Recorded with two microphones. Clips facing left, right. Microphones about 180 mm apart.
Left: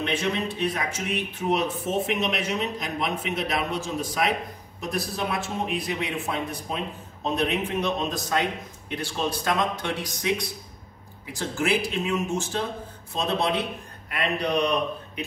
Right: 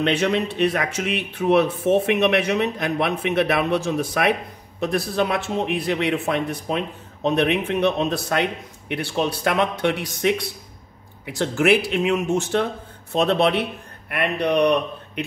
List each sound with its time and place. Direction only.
0.0 s a man's voice: 70° right (ahead or behind)